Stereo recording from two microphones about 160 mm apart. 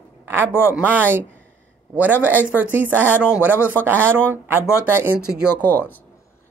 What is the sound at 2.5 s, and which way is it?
Speech, 10° right (ahead or behind).